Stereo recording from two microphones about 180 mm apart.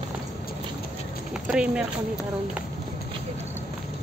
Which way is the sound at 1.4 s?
5° right (ahead or behind).